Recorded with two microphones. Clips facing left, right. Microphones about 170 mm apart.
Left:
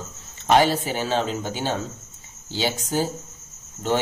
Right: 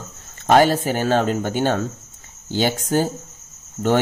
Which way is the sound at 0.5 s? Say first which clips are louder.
Right 4 dB; 50° right (ahead or behind).